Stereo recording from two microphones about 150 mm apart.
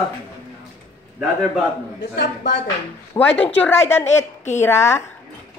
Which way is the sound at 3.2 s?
10° left (ahead or behind).